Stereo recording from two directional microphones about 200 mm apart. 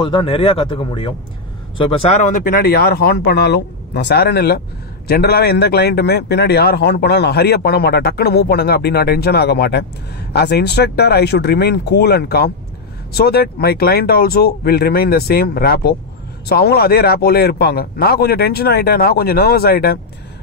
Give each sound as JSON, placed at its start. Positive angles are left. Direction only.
{"t": 0.0, "sound": "a man's voice", "side_deg": 25}